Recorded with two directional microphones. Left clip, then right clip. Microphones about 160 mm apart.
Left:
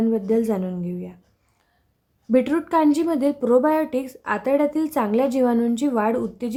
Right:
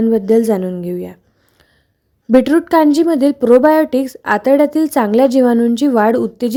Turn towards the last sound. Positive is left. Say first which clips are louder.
# right 9 dB
turn(degrees=-40)  # may be behind; listen again after turning